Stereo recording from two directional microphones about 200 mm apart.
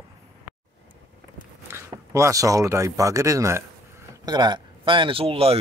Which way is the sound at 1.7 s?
15° right (ahead or behind).